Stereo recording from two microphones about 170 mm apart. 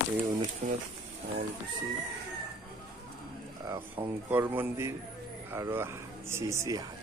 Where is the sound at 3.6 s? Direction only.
20° right (ahead or behind).